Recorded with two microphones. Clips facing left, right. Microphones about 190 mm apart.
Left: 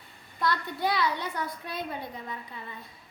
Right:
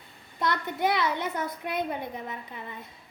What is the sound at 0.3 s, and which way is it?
A child's voice, 20° right (ahead or behind).